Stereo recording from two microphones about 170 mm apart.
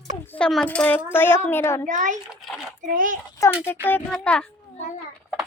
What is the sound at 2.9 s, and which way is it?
Speech, 55° right (ahead or behind).